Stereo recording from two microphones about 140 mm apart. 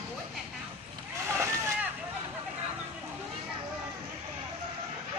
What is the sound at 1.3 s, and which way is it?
Vehicle, 20° right (ahead or behind).